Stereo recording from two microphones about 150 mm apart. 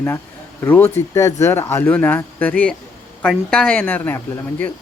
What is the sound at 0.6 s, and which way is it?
Speech, 15° left (ahead or behind).